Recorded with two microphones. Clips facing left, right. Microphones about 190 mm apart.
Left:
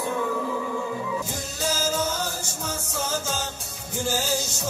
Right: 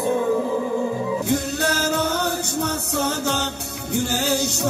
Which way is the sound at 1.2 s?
65° right (ahead or behind).